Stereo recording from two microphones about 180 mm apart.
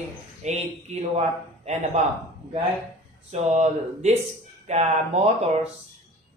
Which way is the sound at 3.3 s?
40° right (ahead or behind).